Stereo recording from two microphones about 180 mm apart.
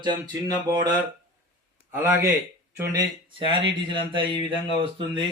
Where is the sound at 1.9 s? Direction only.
15° right (ahead or behind).